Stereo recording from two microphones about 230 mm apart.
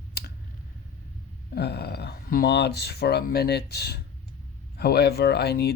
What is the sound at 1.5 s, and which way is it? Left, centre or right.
Speech, left.